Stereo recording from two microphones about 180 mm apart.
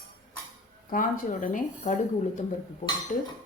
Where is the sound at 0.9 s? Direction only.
45° left (ahead or behind).